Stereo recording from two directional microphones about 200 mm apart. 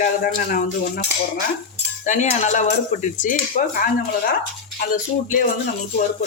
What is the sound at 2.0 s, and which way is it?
Speech, 35° left (ahead or behind).